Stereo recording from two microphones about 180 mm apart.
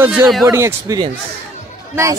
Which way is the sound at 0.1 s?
Centre (ahead or behind).